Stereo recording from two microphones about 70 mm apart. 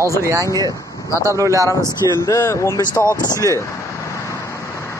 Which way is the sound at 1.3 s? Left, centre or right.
Right.